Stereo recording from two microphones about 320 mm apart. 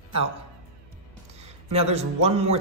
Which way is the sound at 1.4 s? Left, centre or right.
Centre.